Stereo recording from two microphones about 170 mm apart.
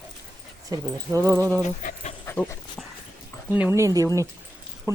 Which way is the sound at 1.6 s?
45° left (ahead or behind).